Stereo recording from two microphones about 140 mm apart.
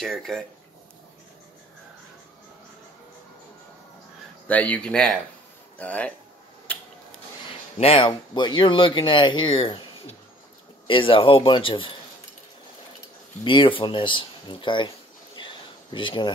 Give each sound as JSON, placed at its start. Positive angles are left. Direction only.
{"t": 0.0, "sound": "speech", "side_deg": 5}
{"t": 4.5, "sound": "speech", "side_deg": 10}
{"t": 7.8, "sound": "speech", "side_deg": 40}
{"t": 13.4, "sound": "speech", "side_deg": 35}
{"t": 15.3, "sound": "a sound", "side_deg": 35}